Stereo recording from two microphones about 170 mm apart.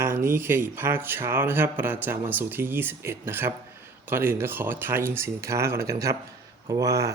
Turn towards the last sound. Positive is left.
turn(degrees=-20)  # may be behind; listen again after turning